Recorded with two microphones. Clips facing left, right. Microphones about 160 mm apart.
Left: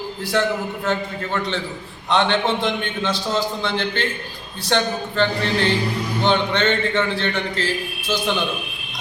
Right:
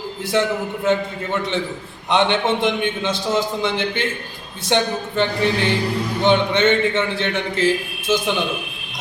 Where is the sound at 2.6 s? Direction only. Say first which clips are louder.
Right 3 dB; 20° right (ahead or behind).